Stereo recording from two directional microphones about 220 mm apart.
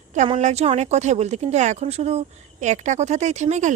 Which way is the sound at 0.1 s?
30° right (ahead or behind).